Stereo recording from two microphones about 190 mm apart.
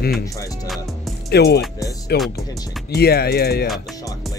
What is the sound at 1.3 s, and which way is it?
Speech, 60° left (ahead or behind).